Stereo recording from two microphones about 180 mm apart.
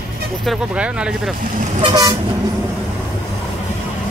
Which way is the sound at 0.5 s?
5° right (ahead or behind).